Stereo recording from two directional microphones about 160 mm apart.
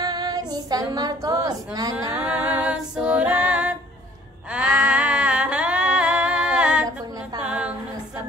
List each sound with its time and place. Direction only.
0.0 s female singing: 25° right (ahead or behind)
2.2 s female singing: 10° right (ahead or behind)
4.5 s music: 5° right (ahead or behind)
7.4 s a sound: 5° right (ahead or behind)